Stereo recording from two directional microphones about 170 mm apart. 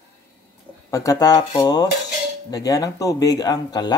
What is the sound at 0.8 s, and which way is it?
Speech, 20° left (ahead or behind).